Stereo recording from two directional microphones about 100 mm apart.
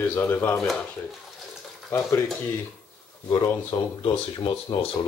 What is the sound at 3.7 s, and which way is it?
Speech, 50° left (ahead or behind).